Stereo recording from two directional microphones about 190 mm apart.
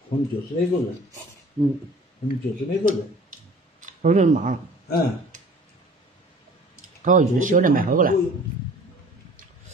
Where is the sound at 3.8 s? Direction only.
40° right (ahead or behind).